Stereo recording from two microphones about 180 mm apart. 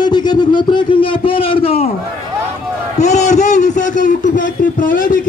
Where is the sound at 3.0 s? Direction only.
40° left (ahead or behind).